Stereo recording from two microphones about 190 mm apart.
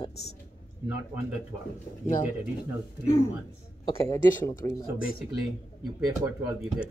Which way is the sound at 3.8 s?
15° left (ahead or behind).